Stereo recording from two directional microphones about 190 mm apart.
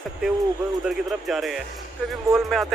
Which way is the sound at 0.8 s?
Centre (ahead or behind).